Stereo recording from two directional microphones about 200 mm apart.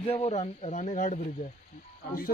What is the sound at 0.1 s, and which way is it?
Speech, 35° left (ahead or behind).